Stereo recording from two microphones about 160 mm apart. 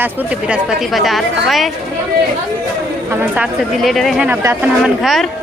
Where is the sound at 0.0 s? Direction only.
10° right (ahead or behind).